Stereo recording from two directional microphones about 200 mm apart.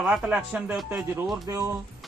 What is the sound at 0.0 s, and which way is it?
Speech, 5° right (ahead or behind).